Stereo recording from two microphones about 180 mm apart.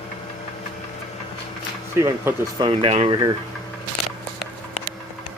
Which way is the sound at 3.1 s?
20° right (ahead or behind).